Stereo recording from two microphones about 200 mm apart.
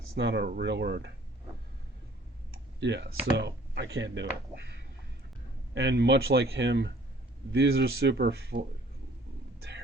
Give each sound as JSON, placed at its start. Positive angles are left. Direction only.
{"t": 0.2, "sound": "speech", "side_deg": -55}
{"t": 2.8, "sound": "speech", "side_deg": -60}
{"t": 5.7, "sound": "speech", "side_deg": -60}